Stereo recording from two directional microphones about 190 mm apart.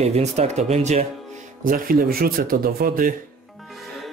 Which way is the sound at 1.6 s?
45° right (ahead or behind).